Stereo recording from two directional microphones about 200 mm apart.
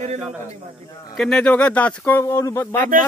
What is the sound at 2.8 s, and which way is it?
Speech, 45° right (ahead or behind).